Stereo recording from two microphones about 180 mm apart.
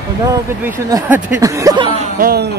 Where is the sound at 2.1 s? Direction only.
60° right (ahead or behind).